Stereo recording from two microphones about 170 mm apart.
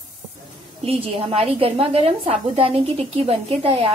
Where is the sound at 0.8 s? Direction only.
35° right (ahead or behind).